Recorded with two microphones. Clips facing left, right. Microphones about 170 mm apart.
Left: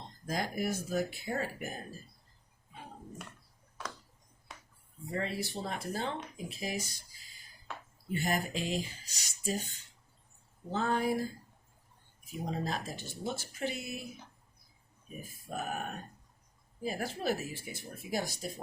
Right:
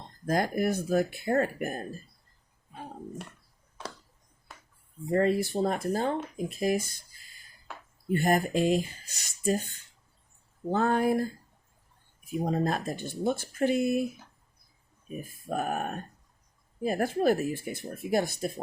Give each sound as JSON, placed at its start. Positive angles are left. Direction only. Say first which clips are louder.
{"t": 0.3, "sound": "speech", "louder": "right 7 dB", "side_deg": -55}
{"t": 5.1, "sound": "speech", "louder": "right 11 dB", "side_deg": -50}
{"t": 12.3, "sound": "speech", "louder": "right 8 dB", "side_deg": -55}
{"t": 15.2, "sound": "speech", "louder": "right 7 dB", "side_deg": -55}